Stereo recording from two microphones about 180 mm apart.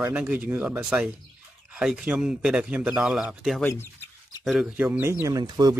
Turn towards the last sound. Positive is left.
turn(degrees=-20)  # may be behind; listen again after turning